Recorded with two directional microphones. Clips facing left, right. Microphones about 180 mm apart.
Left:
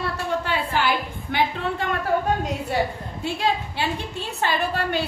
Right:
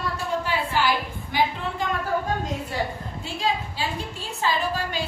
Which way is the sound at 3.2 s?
65° left (ahead or behind).